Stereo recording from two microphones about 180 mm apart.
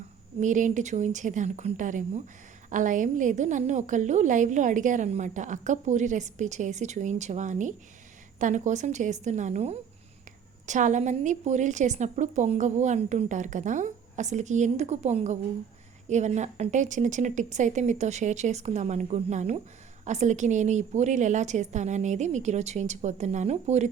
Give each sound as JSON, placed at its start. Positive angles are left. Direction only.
{"t": 0.3, "sound": "a woman's voice", "side_deg": -45}